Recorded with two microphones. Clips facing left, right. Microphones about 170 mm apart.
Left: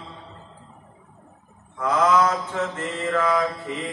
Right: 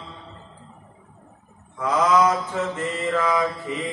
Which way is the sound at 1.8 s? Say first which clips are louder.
Even; 10° right (ahead or behind).